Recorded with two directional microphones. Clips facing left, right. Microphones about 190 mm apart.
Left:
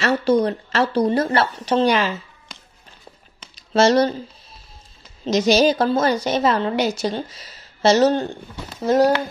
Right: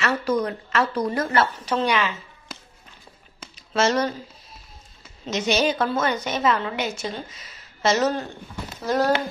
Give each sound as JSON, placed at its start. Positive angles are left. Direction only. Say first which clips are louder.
{"t": 0.0, "sound": "speech", "louder": "left 6 dB", "side_deg": 30}
{"t": 3.5, "sound": "speech", "louder": "left 6 dB", "side_deg": 35}
{"t": 5.2, "sound": "a woman's voice", "louder": "left 6 dB", "side_deg": 35}
{"t": 8.8, "sound": "speech", "louder": "left 6 dB", "side_deg": 20}